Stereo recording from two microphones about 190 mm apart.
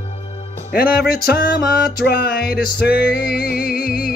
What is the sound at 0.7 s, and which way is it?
Music, 55° left (ahead or behind).